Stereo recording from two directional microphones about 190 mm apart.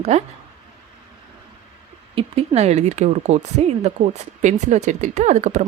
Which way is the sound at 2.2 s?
35° right (ahead or behind).